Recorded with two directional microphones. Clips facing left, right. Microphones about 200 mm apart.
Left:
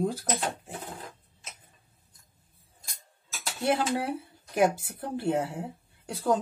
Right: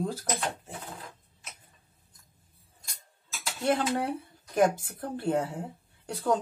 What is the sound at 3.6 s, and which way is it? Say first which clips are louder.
Speech: even; 5° left (ahead or behind).